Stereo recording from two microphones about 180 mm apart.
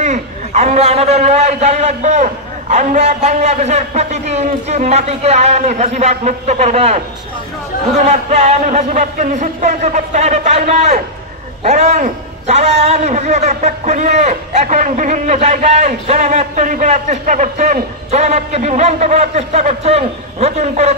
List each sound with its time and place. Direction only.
0.0 s a man's voice: 40° right (ahead or behind)
8.0 s a man's voice: 40° right (ahead or behind)